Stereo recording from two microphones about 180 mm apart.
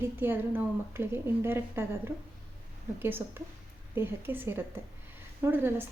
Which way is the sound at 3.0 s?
10° right (ahead or behind).